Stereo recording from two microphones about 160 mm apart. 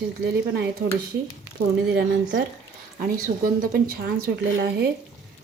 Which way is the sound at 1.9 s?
90° right.